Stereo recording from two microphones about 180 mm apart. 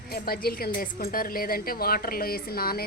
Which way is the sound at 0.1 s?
55° left (ahead or behind).